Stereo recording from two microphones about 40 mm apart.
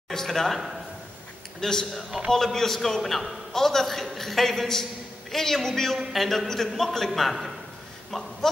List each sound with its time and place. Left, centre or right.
0.1 s a man's voice: centre
1.6 s a man's voice: centre
2.0 s a man's voice: centre
2.3 s a man's voice: centre
8.1 s a sound: centre